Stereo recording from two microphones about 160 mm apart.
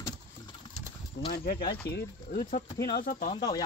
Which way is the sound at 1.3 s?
80° left.